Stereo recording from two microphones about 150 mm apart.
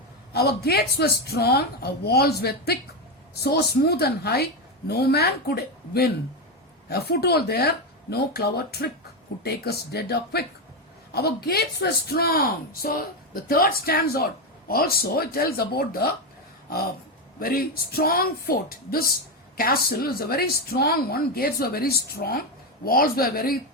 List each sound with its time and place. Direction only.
0.3 s a woman's voice: 90° left
16.6 s a sound: 80° left
17.4 s a woman's voice: 75° left (ahead or behind)